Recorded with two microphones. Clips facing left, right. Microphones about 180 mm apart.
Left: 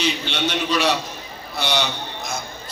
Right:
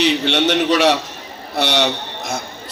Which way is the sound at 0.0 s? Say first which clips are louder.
Right 7 dB; 75° right (ahead or behind).